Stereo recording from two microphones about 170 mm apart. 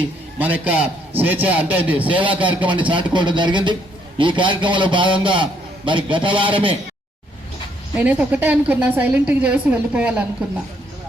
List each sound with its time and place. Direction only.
0.3 s a man's voice: 10° right (ahead or behind)
2.6 s a man's voice: 30° right (ahead or behind)
7.9 s a man's voice: 10° right (ahead or behind)